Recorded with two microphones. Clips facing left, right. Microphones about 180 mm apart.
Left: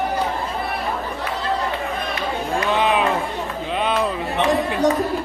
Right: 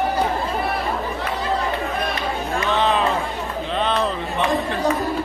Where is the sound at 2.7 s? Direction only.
15° left (ahead or behind).